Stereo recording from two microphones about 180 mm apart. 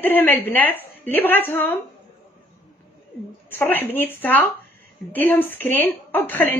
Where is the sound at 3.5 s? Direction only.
10° left (ahead or behind).